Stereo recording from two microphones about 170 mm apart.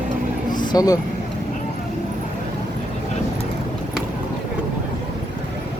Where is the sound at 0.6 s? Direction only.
20° left (ahead or behind).